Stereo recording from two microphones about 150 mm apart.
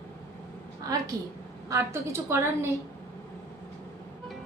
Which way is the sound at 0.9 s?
25° right (ahead or behind).